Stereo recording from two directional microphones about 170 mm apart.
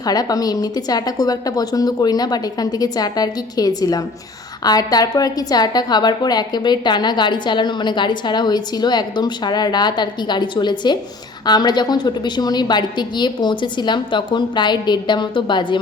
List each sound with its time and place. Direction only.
0.0 s a woman's voice: 20° left (ahead or behind)